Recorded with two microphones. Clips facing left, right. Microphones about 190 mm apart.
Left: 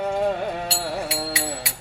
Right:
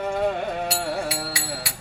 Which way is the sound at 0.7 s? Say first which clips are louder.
Right 1 dB; 25° left (ahead or behind).